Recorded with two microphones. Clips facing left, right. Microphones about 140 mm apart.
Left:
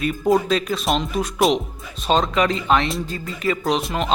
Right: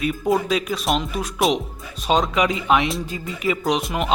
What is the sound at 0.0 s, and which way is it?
Speech, 5° right (ahead or behind).